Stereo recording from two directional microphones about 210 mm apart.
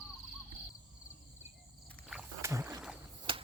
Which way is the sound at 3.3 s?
25° right (ahead or behind).